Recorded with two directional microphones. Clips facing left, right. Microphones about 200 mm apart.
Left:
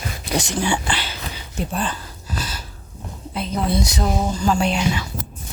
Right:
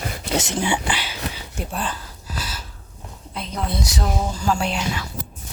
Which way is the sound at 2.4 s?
5° right (ahead or behind).